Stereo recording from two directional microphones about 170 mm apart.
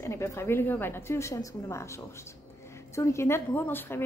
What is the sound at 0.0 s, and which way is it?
A woman's voice, 15° left (ahead or behind).